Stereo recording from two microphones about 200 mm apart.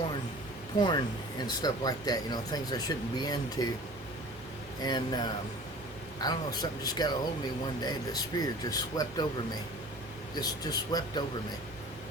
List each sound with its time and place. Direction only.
0.8 s speech: 20° left (ahead or behind)
4.8 s speech: 20° left (ahead or behind)
10.3 s speech: 20° left (ahead or behind)